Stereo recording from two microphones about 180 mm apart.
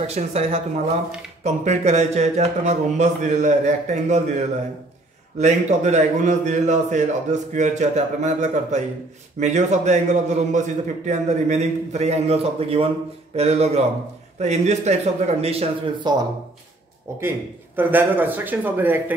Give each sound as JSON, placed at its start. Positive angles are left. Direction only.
{"t": 0.0, "sound": "a man's voice", "side_deg": -35}
{"t": 5.4, "sound": "a man's voice", "side_deg": -40}
{"t": 17.2, "sound": "a man's voice", "side_deg": -10}